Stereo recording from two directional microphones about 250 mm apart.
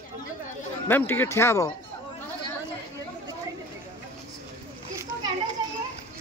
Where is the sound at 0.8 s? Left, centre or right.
Centre.